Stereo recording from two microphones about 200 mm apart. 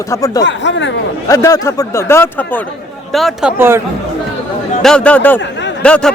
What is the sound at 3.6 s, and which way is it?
Speech, 10° right (ahead or behind).